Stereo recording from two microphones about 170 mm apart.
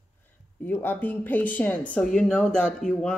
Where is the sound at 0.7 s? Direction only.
10° left (ahead or behind).